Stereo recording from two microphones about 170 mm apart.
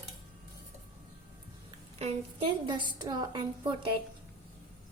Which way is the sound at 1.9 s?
35° right (ahead or behind).